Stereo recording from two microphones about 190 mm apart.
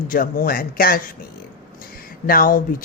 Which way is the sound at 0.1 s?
50° left (ahead or behind).